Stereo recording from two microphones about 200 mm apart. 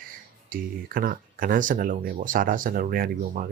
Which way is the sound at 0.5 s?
45° right (ahead or behind).